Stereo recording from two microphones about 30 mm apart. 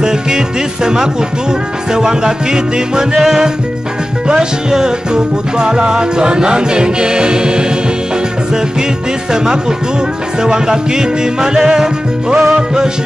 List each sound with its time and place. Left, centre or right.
2.0 s music: right
4.3 s music: right
9.3 s music: right